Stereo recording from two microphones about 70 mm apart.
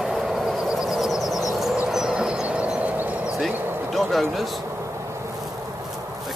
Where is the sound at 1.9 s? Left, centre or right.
Centre; by 3.9 s right.